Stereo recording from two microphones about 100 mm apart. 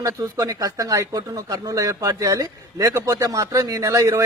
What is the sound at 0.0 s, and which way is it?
Speech, 30° right (ahead or behind).